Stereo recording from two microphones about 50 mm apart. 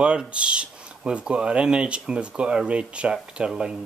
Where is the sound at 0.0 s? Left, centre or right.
Right.